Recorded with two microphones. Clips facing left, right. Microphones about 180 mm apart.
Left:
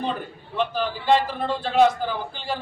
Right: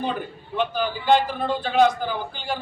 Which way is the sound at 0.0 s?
Centre (ahead or behind).